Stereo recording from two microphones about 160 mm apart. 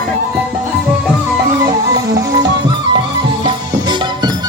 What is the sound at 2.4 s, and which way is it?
Music, 25° right (ahead or behind).